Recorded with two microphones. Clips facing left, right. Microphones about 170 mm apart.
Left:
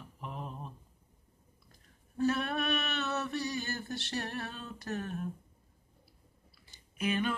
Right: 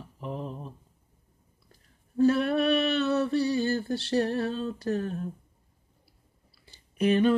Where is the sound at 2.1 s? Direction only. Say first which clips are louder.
Right 8 dB; 30° right (ahead or behind).